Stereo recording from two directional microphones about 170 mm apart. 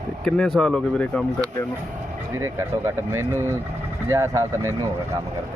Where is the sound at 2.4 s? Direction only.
15° right (ahead or behind).